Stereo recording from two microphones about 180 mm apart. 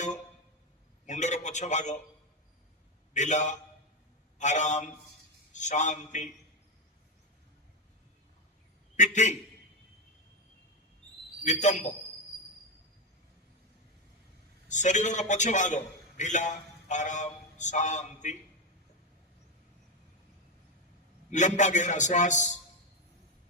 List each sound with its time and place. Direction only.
1.0 s a man's voice: 40° left (ahead or behind)
3.1 s a man's voice: 40° left (ahead or behind)
9.0 s a man's voice: 40° left (ahead or behind)
11.4 s a man's voice: 40° left (ahead or behind)
14.7 s a man's voice: 40° left (ahead or behind)
21.2 s a man's voice: 40° left (ahead or behind)